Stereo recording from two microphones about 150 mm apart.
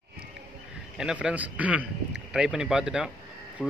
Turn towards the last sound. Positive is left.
turn(degrees=-5)  # may be behind; listen again after turning